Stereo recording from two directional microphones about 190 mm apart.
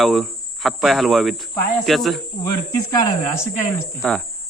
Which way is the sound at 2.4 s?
20° left (ahead or behind).